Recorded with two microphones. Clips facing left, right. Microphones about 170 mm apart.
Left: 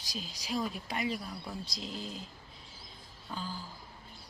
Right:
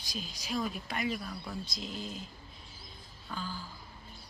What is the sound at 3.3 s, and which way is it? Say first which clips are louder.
Speech: even; 30° left (ahead or behind).